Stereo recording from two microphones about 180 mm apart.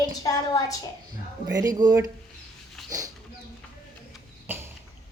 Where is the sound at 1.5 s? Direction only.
20° right (ahead or behind).